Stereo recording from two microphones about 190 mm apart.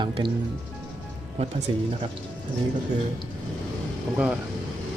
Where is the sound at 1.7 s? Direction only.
25° right (ahead or behind).